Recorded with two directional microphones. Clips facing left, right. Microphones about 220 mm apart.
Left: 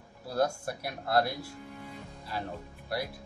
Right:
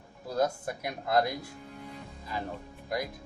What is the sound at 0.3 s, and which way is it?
Speech, 20° right (ahead or behind).